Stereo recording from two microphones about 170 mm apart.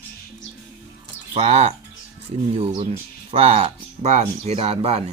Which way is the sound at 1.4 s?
40° right (ahead or behind).